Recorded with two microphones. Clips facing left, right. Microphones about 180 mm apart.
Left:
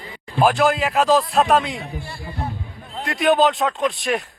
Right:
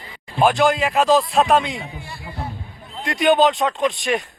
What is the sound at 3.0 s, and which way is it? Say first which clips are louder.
Speech: right 1 dB; centre (ahead or behind).